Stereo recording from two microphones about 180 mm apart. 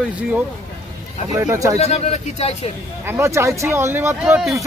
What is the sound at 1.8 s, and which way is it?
Speech, 35° left (ahead or behind).